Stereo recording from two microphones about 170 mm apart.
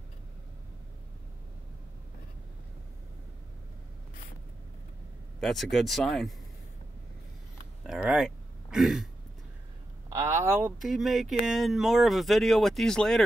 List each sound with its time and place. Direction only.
5.4 s speech: centre (ahead or behind)
7.8 s a sound: 5° right (ahead or behind)
10.1 s speech: 15° right (ahead or behind)
10.8 s speech: centre (ahead or behind)